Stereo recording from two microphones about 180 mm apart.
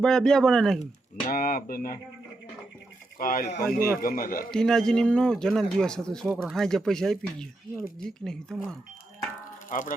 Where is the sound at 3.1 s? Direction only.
55° left (ahead or behind).